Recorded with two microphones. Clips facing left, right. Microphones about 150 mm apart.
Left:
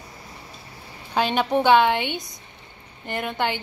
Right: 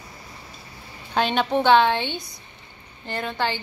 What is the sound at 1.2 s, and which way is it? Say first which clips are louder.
A woman's voice: even; 5° left (ahead or behind).